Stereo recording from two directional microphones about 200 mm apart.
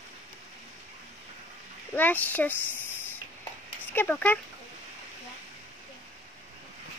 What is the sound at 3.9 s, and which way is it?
Speech, 10° left (ahead or behind).